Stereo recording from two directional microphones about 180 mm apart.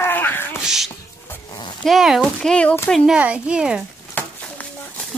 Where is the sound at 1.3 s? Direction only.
20° left (ahead or behind).